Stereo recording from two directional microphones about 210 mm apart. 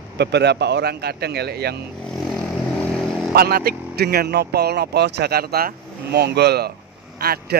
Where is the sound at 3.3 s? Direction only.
45° right (ahead or behind).